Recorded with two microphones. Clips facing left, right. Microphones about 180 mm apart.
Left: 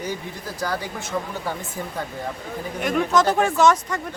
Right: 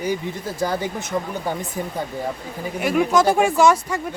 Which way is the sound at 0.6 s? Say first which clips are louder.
Right 4 dB; 20° right (ahead or behind).